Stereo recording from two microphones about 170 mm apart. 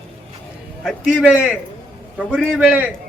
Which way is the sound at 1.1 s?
5° right (ahead or behind).